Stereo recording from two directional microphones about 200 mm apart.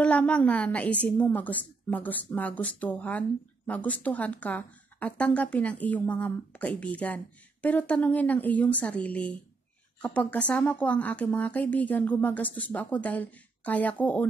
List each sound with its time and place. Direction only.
0.0 s speech: 5° left (ahead or behind)